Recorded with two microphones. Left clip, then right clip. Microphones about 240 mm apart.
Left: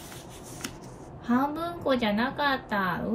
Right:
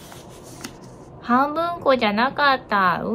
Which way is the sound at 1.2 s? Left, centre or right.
Centre.